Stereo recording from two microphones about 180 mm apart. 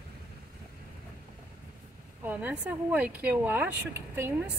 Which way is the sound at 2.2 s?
10° right (ahead or behind).